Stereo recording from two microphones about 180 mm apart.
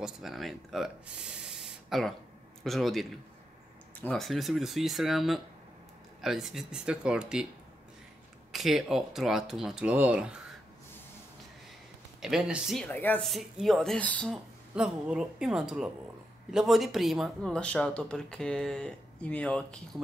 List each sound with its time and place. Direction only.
0.0 s speech: centre (ahead or behind)
8.5 s speech: centre (ahead or behind)
12.2 s speech: centre (ahead or behind)
12.8 s speech: 10° left (ahead or behind)